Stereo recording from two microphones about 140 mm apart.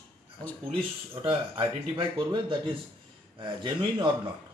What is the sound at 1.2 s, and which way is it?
Speech, 40° right (ahead or behind).